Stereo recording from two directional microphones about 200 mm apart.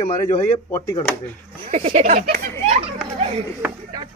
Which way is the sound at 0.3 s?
20° left (ahead or behind).